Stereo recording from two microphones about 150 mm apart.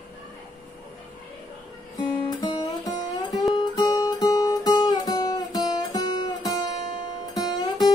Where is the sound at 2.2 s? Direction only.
25° left (ahead or behind).